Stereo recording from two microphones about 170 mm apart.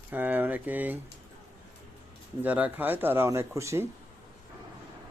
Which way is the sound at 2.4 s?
10° right (ahead or behind).